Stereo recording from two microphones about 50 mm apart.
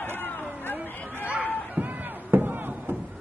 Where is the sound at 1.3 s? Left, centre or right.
Right.